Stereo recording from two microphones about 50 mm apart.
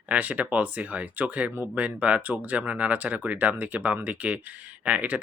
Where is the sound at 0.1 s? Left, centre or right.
Right.